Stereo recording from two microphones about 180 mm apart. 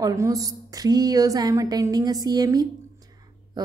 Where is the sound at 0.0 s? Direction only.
20° right (ahead or behind).